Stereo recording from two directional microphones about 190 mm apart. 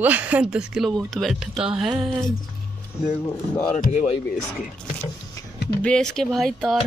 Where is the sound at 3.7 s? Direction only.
40° left (ahead or behind).